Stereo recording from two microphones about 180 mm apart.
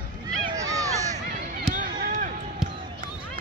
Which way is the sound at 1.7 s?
45° right (ahead or behind).